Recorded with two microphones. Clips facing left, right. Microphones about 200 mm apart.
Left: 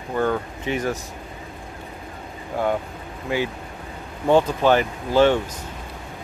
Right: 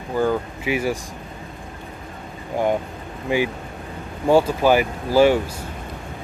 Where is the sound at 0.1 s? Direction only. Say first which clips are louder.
Right 2 dB; 5° right (ahead or behind).